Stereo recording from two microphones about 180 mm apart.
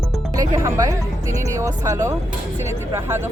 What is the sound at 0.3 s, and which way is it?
Speech, 20° right (ahead or behind).